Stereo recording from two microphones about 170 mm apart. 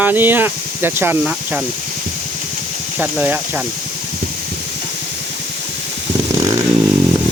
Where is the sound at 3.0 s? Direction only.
10° right (ahead or behind).